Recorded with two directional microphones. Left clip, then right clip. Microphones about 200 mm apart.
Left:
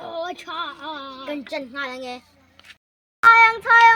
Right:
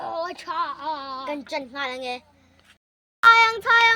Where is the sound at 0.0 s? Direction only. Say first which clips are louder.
Even; 10° right (ahead or behind).